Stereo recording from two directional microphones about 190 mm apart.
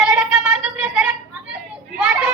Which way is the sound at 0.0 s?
Centre (ahead or behind).